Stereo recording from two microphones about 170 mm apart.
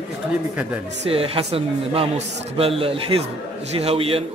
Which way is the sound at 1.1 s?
35° right (ahead or behind).